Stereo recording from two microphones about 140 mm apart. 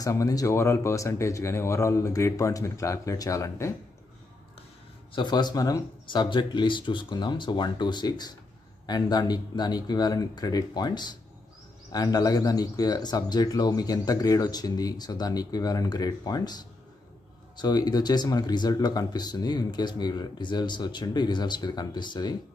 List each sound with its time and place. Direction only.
0.0 s speech: 25° left (ahead or behind)
5.1 s speech: 30° left (ahead or behind)